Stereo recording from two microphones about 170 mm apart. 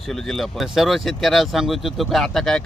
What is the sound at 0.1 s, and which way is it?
A man's voice, centre (ahead or behind).